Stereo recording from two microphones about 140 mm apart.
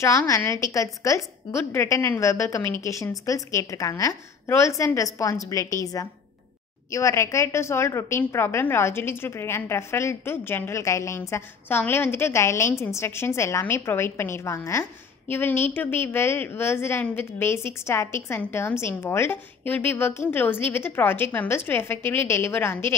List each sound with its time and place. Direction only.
0.4 s a woman's voice: 20° left (ahead or behind)